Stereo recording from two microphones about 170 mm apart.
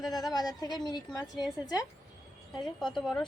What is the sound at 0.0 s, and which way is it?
Speech, centre (ahead or behind).